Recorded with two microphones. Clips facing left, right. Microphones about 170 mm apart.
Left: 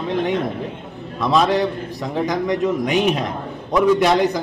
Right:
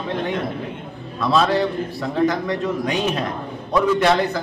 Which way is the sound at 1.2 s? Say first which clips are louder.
Left 1 dB; 15° left (ahead or behind).